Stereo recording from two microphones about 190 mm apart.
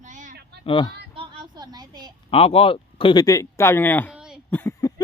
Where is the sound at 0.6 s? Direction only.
25° left (ahead or behind).